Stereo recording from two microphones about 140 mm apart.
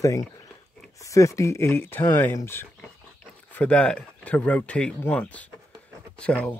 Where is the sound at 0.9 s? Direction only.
25° left (ahead or behind).